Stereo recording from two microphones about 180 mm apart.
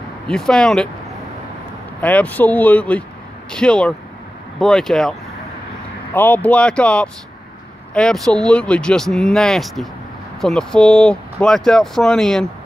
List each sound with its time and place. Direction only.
0.3 s speech: centre (ahead or behind)
2.0 s speech: 10° left (ahead or behind)
6.1 s speech: 10° left (ahead or behind)